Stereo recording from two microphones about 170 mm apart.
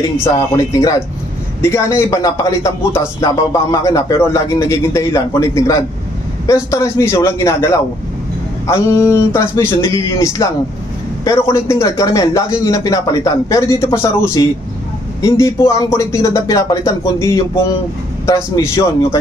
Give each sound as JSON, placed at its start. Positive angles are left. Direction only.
{"t": 0.7, "sound": "speech", "side_deg": 20}